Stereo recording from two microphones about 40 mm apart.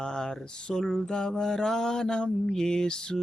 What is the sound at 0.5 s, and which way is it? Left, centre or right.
Speech, left.